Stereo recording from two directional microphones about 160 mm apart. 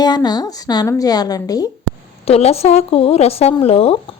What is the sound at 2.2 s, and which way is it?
A woman's voice, 40° left (ahead or behind).